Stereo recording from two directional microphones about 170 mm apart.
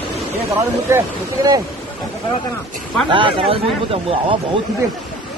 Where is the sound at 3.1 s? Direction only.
30° right (ahead or behind).